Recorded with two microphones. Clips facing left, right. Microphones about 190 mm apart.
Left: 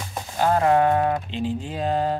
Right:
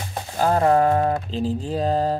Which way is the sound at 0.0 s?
35° right (ahead or behind).